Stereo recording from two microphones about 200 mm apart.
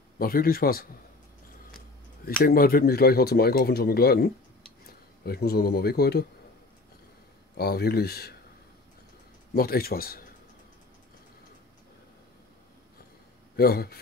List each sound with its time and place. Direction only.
0.2 s speech: 45° left (ahead or behind)
2.2 s speech: 45° left (ahead or behind)
7.5 s speech: 50° left (ahead or behind)
9.5 s speech: 50° left (ahead or behind)
13.6 s speech: 50° left (ahead or behind)